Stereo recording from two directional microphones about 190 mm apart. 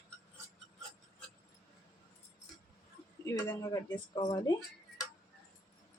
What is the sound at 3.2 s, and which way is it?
Speech, 20° left (ahead or behind).